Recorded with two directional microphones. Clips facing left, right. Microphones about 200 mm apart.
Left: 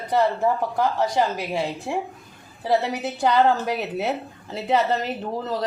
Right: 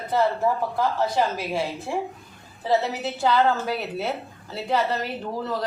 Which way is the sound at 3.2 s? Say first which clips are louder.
Left 2 dB; 15° left (ahead or behind).